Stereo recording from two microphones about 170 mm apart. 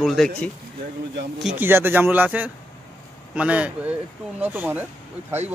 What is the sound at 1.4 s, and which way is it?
A man's voice, centre (ahead or behind).